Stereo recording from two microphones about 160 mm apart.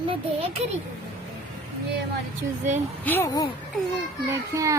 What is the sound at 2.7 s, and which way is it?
Speech, 50° right (ahead or behind).